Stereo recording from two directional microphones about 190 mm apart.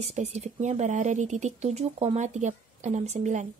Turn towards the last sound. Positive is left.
turn(degrees=-40)  # may be behind; listen again after turning